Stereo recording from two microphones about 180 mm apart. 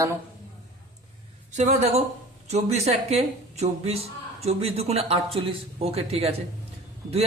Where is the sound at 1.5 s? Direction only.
40° right (ahead or behind).